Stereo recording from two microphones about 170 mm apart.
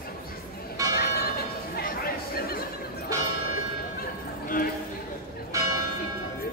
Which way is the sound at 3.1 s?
20° right (ahead or behind).